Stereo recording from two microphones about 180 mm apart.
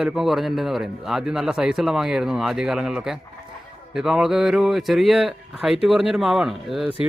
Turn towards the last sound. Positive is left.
turn(degrees=0)  # may be behind; listen again after turning